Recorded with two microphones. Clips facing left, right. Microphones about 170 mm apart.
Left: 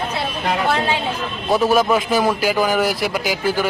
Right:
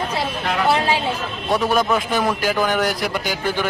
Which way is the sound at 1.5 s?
Centre (ahead or behind).